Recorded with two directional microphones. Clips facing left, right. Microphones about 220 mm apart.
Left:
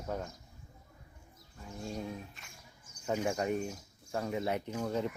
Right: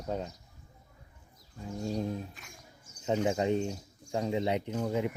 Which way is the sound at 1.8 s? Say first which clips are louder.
Right 6 dB; 35° right (ahead or behind).